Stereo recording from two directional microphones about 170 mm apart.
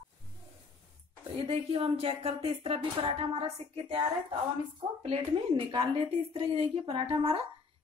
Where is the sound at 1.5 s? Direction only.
35° right (ahead or behind).